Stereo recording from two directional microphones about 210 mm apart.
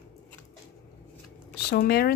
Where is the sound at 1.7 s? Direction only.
50° left (ahead or behind).